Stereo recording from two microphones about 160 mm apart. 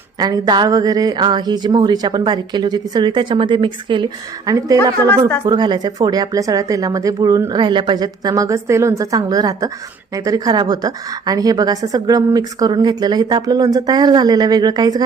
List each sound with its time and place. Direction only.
0.2 s a woman's voice: 25° right (ahead or behind)
5.0 s speech: 20° left (ahead or behind)
5.5 s a woman's voice: 25° right (ahead or behind)